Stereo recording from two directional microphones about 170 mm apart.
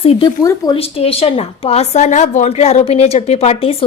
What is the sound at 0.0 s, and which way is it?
Speech, 35° left (ahead or behind).